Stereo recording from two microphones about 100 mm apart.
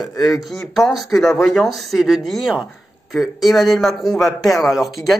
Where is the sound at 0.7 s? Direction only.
Centre (ahead or behind).